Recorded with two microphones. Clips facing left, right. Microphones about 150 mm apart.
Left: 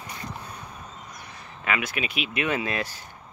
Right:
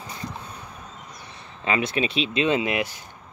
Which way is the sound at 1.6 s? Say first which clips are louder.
Right 5 dB; 25° right (ahead or behind).